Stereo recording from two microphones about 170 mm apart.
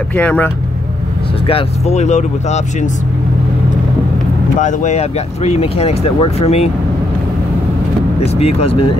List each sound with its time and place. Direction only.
0.1 s speech: 10° left (ahead or behind)
1.5 s speech: 40° left (ahead or behind)
4.6 s speech: 45° left (ahead or behind)
8.2 s speech: 35° left (ahead or behind)